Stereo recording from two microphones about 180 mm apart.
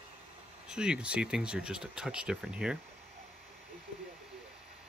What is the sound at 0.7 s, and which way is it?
Speech, 5° right (ahead or behind).